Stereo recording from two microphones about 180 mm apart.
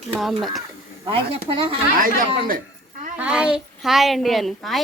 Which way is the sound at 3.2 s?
5° right (ahead or behind).